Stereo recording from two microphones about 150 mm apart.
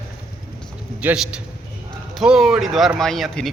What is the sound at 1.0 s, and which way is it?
A man's voice, 5° right (ahead or behind).